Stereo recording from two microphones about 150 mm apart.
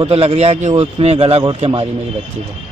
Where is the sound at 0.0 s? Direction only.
40° right (ahead or behind).